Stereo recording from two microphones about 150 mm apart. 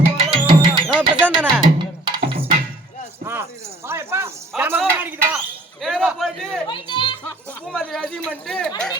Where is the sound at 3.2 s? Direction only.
15° right (ahead or behind).